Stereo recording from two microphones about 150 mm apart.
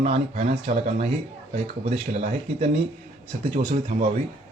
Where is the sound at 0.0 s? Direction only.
45° right (ahead or behind).